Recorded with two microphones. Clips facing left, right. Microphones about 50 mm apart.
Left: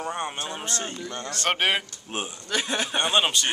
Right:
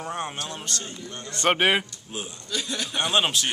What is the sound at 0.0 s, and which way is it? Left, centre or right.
Speech, centre.